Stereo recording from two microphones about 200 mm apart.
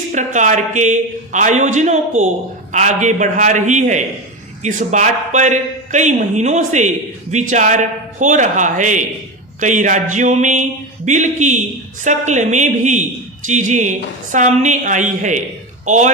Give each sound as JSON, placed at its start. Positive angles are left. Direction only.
{"t": 0.1, "sound": "a man's voice", "side_deg": -40}